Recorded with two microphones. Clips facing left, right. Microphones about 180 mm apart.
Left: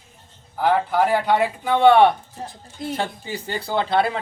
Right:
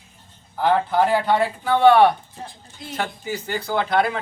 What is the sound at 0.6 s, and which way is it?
A man's voice, 10° left (ahead or behind).